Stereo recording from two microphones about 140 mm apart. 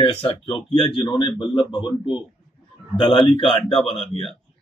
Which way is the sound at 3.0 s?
35° left (ahead or behind).